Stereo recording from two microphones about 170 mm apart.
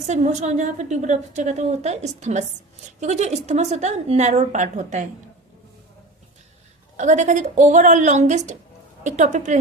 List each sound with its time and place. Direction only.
0.1 s a woman's voice: 40° right (ahead or behind)
6.9 s a woman's voice: 45° right (ahead or behind)